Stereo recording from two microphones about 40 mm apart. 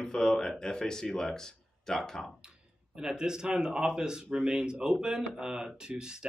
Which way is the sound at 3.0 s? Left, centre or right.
Centre.